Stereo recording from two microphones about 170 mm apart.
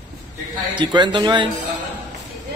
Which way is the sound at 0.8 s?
25° right (ahead or behind).